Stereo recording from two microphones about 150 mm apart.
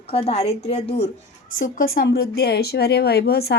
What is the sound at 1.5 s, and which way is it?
A woman's voice, 65° left (ahead or behind).